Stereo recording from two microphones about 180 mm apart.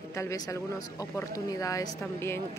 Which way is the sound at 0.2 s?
15° left (ahead or behind).